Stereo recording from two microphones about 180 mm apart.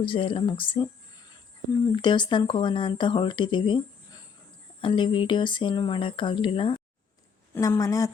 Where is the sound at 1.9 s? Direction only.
25° left (ahead or behind).